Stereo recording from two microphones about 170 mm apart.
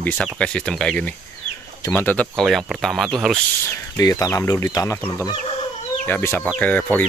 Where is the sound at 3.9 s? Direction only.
20° left (ahead or behind).